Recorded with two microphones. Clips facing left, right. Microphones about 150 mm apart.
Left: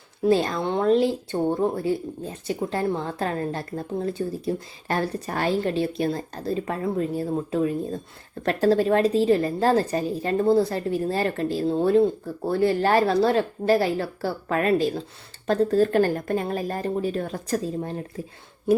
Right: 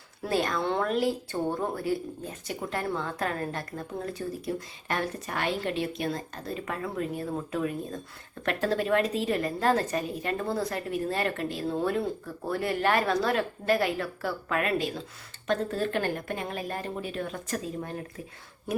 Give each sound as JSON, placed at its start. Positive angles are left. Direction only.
{"t": 0.2, "sound": "a woman's voice", "side_deg": 25}